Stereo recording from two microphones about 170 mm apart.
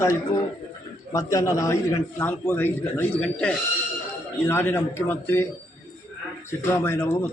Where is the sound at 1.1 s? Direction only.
20° left (ahead or behind).